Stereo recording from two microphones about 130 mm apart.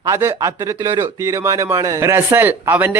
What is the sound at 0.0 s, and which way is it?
Speech, 20° right (ahead or behind).